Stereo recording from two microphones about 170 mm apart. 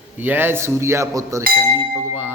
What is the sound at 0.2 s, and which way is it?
Speech, 10° right (ahead or behind).